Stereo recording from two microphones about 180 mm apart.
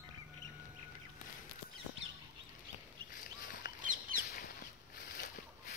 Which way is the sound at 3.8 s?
45° right (ahead or behind).